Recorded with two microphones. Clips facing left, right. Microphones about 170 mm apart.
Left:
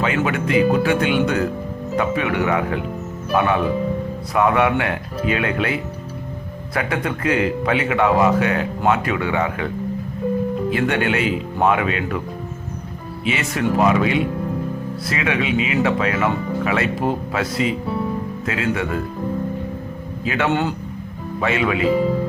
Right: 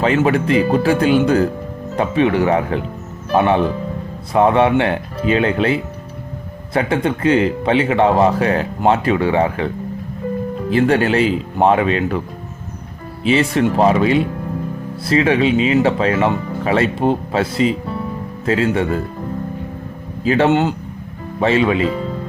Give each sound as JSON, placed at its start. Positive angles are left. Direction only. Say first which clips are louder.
{"t": 0.0, "sound": "speech", "louder": "right 5 dB", "side_deg": -35}
{"t": 10.7, "sound": "speech", "louder": "right 8 dB", "side_deg": -30}
{"t": 13.2, "sound": "speech", "louder": "right 6 dB", "side_deg": -30}
{"t": 20.2, "sound": "speech", "louder": "right 7 dB", "side_deg": -30}
{"t": 20.5, "sound": "speech", "louder": "right 5 dB", "side_deg": -20}
{"t": 21.4, "sound": "speech", "louder": "right 5 dB", "side_deg": -30}